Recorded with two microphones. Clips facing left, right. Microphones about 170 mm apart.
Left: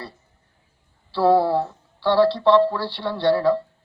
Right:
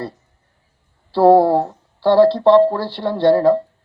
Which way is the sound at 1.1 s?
50° right (ahead or behind).